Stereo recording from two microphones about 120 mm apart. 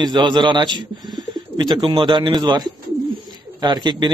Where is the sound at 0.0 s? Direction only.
40° right (ahead or behind).